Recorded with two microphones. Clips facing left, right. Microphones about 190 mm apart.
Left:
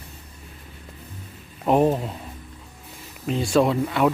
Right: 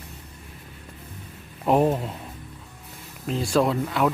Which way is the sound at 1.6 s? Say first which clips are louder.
Left 1 dB; centre (ahead or behind).